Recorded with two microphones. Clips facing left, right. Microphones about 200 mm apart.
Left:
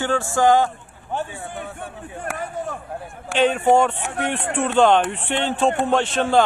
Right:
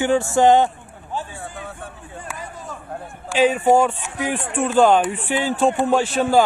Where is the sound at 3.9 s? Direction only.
65° left (ahead or behind).